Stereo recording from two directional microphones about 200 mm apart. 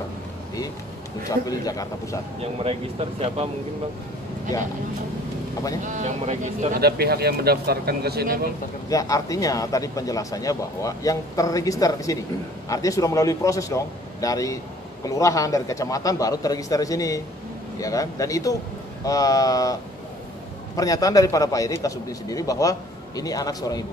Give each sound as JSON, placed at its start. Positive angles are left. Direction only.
{"t": 1.3, "sound": "speech", "side_deg": 15}
{"t": 2.4, "sound": "speech", "side_deg": -30}
{"t": 5.9, "sound": "speech", "side_deg": -35}
{"t": 6.8, "sound": "speech", "side_deg": -50}
{"t": 8.8, "sound": "speech", "side_deg": 15}